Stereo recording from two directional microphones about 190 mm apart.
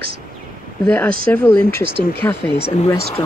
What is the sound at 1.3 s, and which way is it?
Speech, 10° left (ahead or behind).